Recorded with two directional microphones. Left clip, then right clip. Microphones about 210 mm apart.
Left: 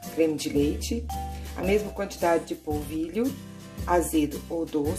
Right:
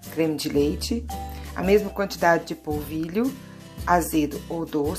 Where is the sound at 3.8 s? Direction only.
15° right (ahead or behind).